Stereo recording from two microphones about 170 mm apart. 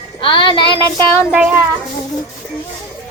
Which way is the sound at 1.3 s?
10° right (ahead or behind).